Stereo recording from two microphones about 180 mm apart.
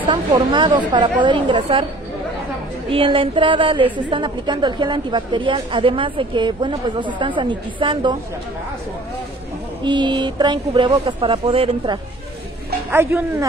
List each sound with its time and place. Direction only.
0.0 s a woman's voice: 25° right (ahead or behind)
2.9 s a woman's voice: 30° right (ahead or behind)
9.8 s a woman's voice: 25° right (ahead or behind)
12.9 s speech: 15° right (ahead or behind)